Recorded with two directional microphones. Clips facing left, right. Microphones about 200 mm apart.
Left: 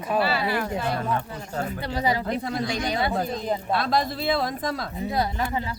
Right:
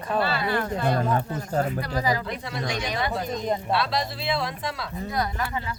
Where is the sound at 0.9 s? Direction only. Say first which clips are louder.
Right 3 dB; 40° right (ahead or behind).